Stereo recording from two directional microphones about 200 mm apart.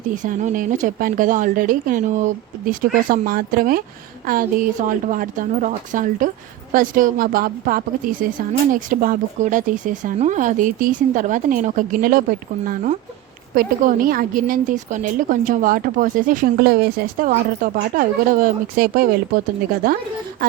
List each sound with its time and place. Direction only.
0.2 s a woman's voice: 40° right (ahead or behind)